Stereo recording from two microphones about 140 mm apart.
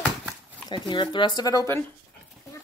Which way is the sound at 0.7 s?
30° left (ahead or behind).